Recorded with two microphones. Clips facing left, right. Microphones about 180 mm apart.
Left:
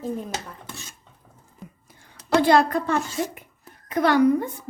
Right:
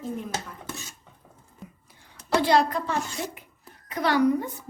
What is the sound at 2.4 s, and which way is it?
A woman's voice, 50° left (ahead or behind).